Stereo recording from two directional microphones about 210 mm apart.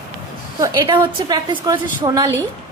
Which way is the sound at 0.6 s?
15° right (ahead or behind).